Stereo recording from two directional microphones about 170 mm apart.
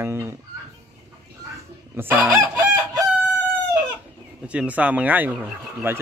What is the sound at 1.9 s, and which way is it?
Chicken, 15° right (ahead or behind).